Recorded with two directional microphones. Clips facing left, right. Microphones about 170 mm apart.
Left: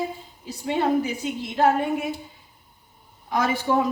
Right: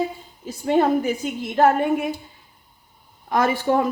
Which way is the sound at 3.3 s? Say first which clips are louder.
Right 3 dB; 50° right (ahead or behind).